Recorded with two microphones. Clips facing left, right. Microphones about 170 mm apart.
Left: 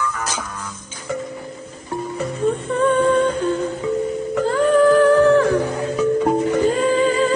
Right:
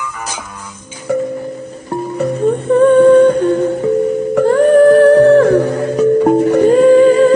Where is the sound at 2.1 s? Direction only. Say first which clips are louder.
Right 7 dB; 60° right (ahead or behind).